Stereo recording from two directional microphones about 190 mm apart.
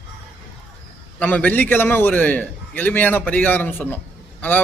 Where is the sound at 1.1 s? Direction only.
5° left (ahead or behind).